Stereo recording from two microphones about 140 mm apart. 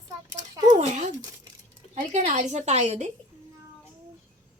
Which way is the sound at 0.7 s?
55° right (ahead or behind).